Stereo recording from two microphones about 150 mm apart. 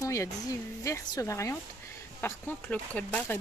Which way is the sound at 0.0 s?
20° left (ahead or behind).